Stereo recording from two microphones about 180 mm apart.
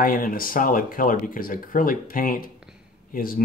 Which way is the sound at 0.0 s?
55° left (ahead or behind).